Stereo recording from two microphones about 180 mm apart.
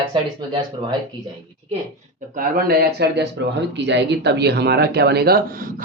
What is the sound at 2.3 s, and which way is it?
Speech, 50° right (ahead or behind).